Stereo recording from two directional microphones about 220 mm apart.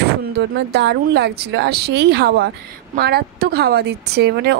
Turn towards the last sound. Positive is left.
turn(degrees=-50)  # may be behind; listen again after turning